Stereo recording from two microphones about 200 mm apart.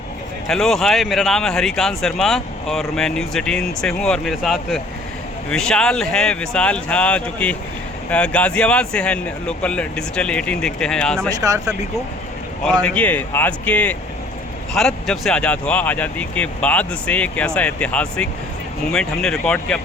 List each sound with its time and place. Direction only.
0.4 s speech: centre (ahead or behind)
11.3 s speech: 15° right (ahead or behind)
12.8 s speech: 5° left (ahead or behind)